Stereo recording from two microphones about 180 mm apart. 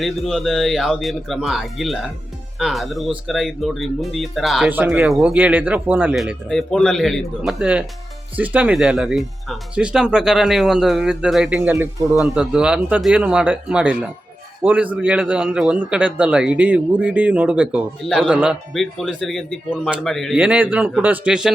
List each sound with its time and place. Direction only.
0.0 s a man's voice: centre (ahead or behind)